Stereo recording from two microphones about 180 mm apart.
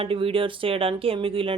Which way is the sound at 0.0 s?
30° right (ahead or behind).